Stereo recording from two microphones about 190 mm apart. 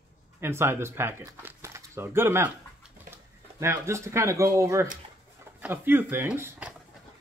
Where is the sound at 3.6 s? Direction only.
15° right (ahead or behind).